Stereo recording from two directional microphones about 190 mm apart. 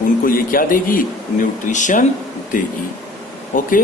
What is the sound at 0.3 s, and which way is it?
Speech, 50° left (ahead or behind).